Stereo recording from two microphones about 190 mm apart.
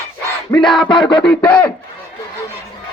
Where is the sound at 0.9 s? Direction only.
25° left (ahead or behind).